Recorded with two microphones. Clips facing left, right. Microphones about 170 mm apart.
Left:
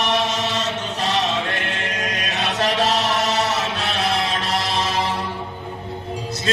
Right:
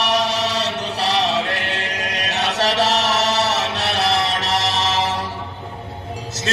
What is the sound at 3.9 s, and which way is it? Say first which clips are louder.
Music: right 3 dB; 80° right.